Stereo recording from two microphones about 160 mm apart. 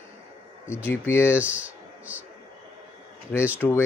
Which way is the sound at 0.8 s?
15° left (ahead or behind).